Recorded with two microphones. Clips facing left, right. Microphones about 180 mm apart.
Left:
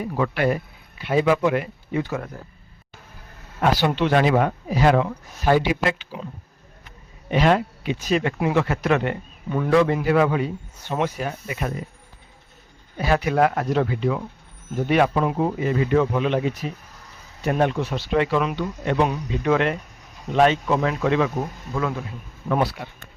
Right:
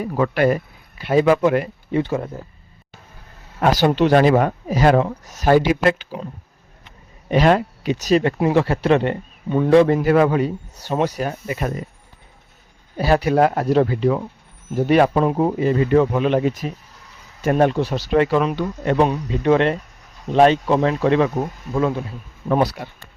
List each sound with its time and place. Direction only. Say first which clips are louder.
0.2 s speech: right 5 dB; 45° right (ahead or behind)
2.0 s speech: right 5 dB; 30° right (ahead or behind)
3.6 s speech: right 4 dB; 45° right (ahead or behind)
7.3 s speech: right 3 dB; 40° right (ahead or behind)
13.0 s speech: right 4 dB; 35° right (ahead or behind)